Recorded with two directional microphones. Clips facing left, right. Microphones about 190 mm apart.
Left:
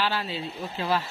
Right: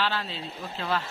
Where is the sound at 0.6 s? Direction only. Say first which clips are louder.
Left 3 dB; 20° left (ahead or behind).